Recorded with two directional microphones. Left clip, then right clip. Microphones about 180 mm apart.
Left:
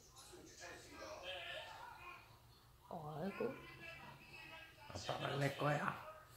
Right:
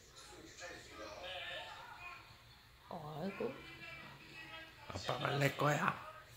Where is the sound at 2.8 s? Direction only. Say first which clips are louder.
Right 2 dB; centre (ahead or behind).